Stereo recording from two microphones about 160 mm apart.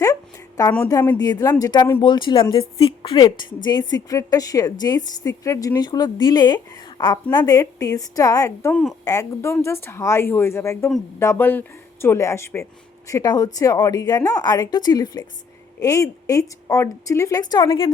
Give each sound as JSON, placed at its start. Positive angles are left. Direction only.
{"t": 0.0, "sound": "a sound", "side_deg": 20}
{"t": 0.9, "sound": "a woman's voice", "side_deg": 20}
{"t": 8.7, "sound": "a woman's voice", "side_deg": 0}
{"t": 9.0, "sound": "a woman's voice", "side_deg": 20}